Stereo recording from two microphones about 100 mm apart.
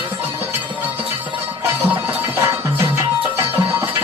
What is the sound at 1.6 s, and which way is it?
Music, 25° right (ahead or behind).